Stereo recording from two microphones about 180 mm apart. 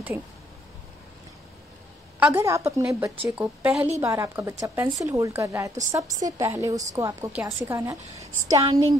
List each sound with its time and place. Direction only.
2.1 s a woman's voice: 10° right (ahead or behind)